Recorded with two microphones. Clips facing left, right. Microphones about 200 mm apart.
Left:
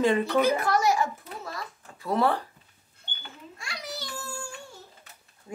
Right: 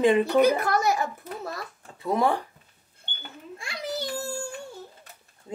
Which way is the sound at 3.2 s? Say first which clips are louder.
Right 4 dB; 55° right (ahead or behind).